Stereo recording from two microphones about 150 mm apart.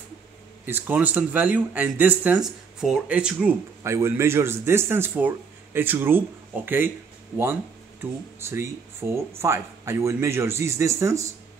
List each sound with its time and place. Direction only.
0.7 s a man's voice: 15° right (ahead or behind)
3.8 s a man's voice: 20° right (ahead or behind)
8.0 s speech: 15° right (ahead or behind)